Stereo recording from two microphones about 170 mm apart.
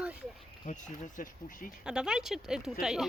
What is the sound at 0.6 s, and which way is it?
Speech, 50° left (ahead or behind).